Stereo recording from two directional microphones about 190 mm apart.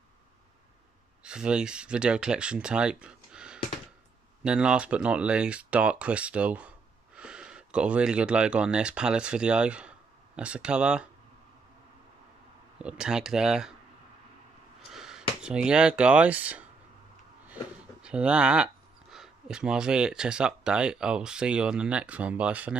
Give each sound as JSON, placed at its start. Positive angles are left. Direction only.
{"t": 1.2, "sound": "speech", "side_deg": -5}
{"t": 12.7, "sound": "speech", "side_deg": -5}
{"t": 14.9, "sound": "speech", "side_deg": -5}
{"t": 18.0, "sound": "speech", "side_deg": -5}